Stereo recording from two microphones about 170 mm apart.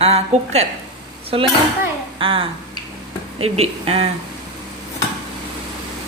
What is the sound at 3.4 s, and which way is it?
Speech, 35° right (ahead or behind).